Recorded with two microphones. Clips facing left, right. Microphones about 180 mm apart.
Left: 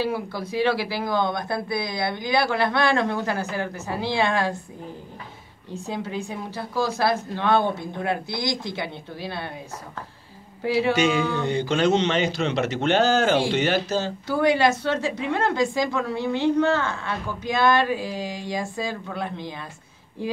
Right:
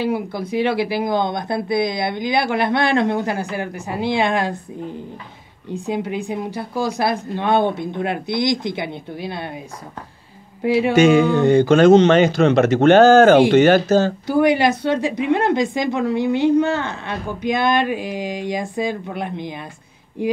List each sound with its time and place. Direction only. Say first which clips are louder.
0.0 s a woman's voice: right 4 dB; 20° right (ahead or behind)
5.9 s a woman's voice: right 6 dB; 15° right (ahead or behind)
10.6 s speech: right 5 dB; 15° right (ahead or behind)
10.9 s speech: right 11 dB; 50° right (ahead or behind)
14.2 s a woman's voice: right 4 dB; 15° right (ahead or behind)